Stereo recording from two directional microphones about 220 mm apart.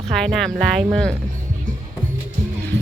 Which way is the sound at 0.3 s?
Centre (ahead or behind).